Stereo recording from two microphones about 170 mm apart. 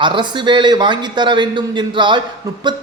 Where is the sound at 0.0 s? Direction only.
30° right (ahead or behind).